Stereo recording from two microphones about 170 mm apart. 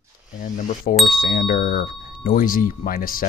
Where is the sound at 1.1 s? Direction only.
55° left (ahead or behind).